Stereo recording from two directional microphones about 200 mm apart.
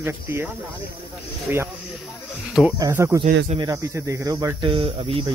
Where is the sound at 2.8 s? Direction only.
15° right (ahead or behind).